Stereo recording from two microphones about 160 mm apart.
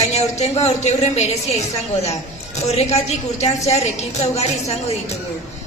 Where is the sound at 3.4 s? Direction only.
45° left (ahead or behind).